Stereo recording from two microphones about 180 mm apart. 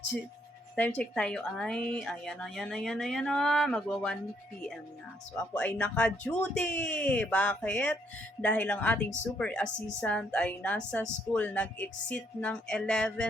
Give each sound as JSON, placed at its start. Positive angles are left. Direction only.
{"t": 0.8, "sound": "speech", "side_deg": 10}
{"t": 5.5, "sound": "a woman's voice", "side_deg": 10}